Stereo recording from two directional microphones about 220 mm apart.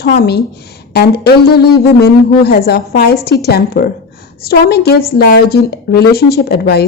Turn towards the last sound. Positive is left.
turn(degrees=45)  # may be behind; listen again after turning